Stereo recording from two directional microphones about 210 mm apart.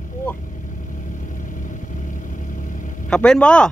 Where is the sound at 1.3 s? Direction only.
40° left (ahead or behind).